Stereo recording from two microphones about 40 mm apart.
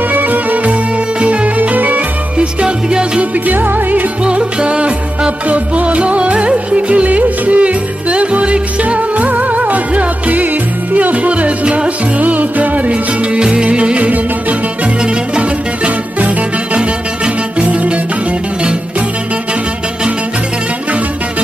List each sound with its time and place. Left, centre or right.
0.1 s music: right
1.2 s music: right
2.3 s music: right
3.4 s music: right
4.2 s music: right
12.2 s music: right
16.2 s music: right
18.6 s music: right